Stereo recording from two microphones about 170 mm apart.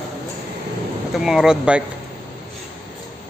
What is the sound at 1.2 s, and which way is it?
Speech, 5° right (ahead or behind).